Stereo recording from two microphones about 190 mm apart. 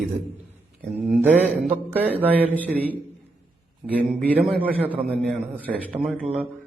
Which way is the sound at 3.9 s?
5° right (ahead or behind).